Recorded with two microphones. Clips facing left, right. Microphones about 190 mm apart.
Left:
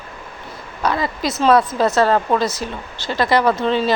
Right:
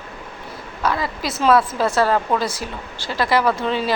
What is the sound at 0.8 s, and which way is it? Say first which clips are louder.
A woman's voice: left 2 dB; centre (ahead or behind).